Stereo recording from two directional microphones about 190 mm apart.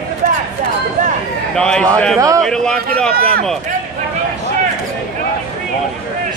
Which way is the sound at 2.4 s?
5° left (ahead or behind).